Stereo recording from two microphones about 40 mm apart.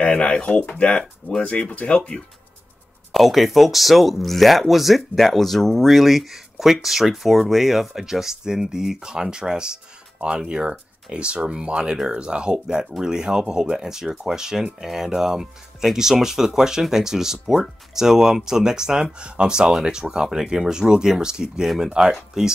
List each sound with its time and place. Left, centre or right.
0.0 s speech: left
2.0 s speech: centre
3.1 s speech: centre; by 22.1 s right
22.3 s speech: centre